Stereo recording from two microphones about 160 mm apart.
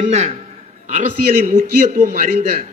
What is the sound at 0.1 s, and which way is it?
Speech, 40° right (ahead or behind).